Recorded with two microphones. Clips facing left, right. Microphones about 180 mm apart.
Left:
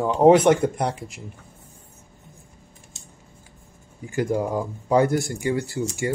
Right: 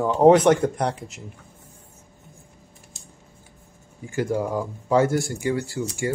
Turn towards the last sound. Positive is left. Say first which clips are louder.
# left 1 dB
turn(degrees=20)  # may be behind; listen again after turning